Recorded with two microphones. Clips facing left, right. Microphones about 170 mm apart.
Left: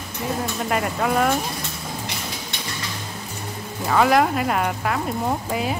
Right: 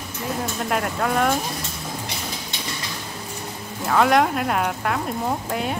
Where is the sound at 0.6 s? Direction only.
Centre (ahead or behind).